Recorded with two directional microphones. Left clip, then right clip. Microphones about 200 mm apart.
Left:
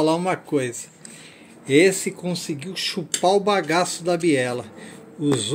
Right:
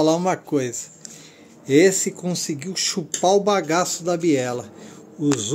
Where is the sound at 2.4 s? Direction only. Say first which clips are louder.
Right 4 dB; 25° right (ahead or behind).